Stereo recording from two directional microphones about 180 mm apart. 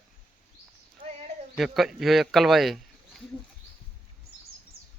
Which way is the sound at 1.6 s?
Centre (ahead or behind).